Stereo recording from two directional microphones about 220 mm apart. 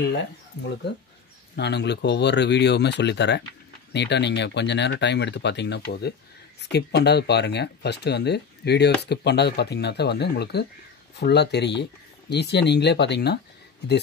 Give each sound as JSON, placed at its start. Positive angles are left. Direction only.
{"t": 0.0, "sound": "speech", "side_deg": 50}
{"t": 1.6, "sound": "speech", "side_deg": 50}